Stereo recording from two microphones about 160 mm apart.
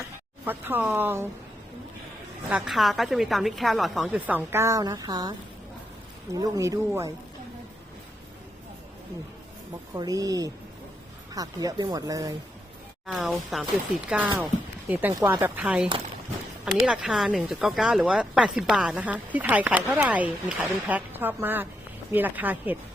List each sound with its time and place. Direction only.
0.4 s speech: 15° right (ahead or behind)
2.5 s speech: 5° right (ahead or behind); by 5.3 s 25° right (ahead or behind)
6.3 s speech: 20° right (ahead or behind)
9.9 s speech: 25° right (ahead or behind)
13.1 s speech: centre (ahead or behind)
14.8 s speech: 15° right (ahead or behind)